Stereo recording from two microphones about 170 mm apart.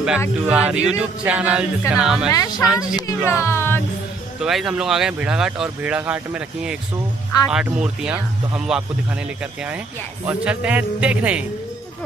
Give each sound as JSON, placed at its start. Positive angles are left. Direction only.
{"t": 0.5, "sound": "music", "side_deg": -5}
{"t": 1.9, "sound": "speech", "side_deg": -5}
{"t": 2.3, "sound": "speech", "side_deg": 20}
{"t": 2.6, "sound": "speech", "side_deg": -5}
{"t": 3.1, "sound": "speech", "side_deg": 15}
{"t": 4.4, "sound": "speech", "side_deg": 0}
{"t": 10.2, "sound": "music", "side_deg": -10}